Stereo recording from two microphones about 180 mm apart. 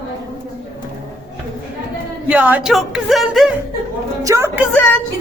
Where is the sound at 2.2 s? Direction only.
5° right (ahead or behind).